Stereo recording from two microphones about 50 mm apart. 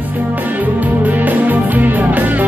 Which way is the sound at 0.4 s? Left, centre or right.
Right.